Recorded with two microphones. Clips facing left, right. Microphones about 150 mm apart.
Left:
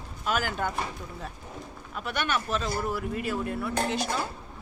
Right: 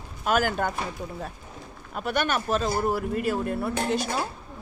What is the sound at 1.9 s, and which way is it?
Speech, 45° right (ahead or behind).